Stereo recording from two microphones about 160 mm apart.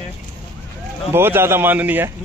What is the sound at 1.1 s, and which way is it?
Speech, 15° right (ahead or behind).